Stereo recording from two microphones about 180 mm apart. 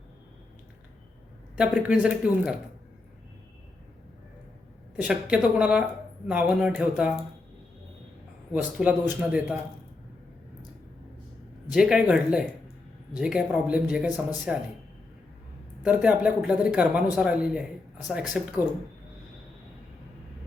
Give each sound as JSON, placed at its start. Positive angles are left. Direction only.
{"t": 1.5, "sound": "speech", "side_deg": -5}
{"t": 4.9, "sound": "speech", "side_deg": -5}
{"t": 8.8, "sound": "speech", "side_deg": -5}
{"t": 11.7, "sound": "speech", "side_deg": -5}
{"t": 15.8, "sound": "speech", "side_deg": -5}